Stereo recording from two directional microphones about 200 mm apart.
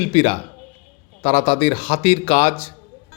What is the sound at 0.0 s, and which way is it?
A man's voice, 30° left (ahead or behind).